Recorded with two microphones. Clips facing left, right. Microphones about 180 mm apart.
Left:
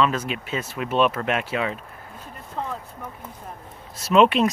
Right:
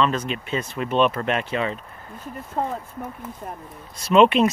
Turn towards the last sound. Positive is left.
turn(degrees=0)  # may be behind; listen again after turning